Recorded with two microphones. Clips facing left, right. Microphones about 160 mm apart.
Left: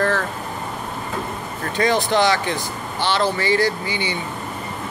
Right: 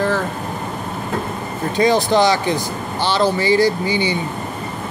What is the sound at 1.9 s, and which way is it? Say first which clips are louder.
Speech: right 3 dB; 35° right (ahead or behind).